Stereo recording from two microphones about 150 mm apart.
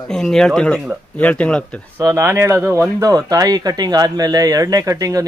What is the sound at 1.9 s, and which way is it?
Speech, 15° right (ahead or behind).